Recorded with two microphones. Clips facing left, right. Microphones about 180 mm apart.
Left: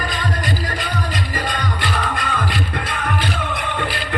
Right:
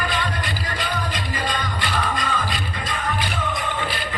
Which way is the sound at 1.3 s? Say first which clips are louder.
Left 2 dB; 50° left (ahead or behind).